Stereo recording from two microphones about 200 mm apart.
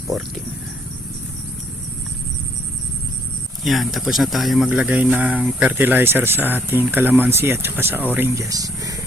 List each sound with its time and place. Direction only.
3.6 s speech: centre (ahead or behind); by 9.0 s 15° right (ahead or behind)